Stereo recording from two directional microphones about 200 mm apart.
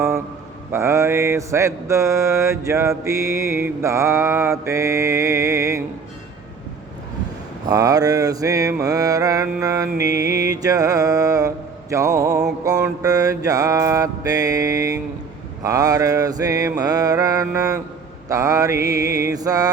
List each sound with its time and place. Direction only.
0.7 s mantra: 15° right (ahead or behind)
7.7 s mantra: 20° right (ahead or behind)